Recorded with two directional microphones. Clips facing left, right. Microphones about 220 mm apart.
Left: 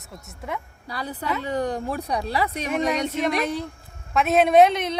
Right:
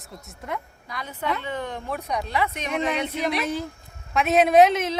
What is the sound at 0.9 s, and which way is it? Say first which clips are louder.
A woman's voice: left 1 dB; 35° left (ahead or behind).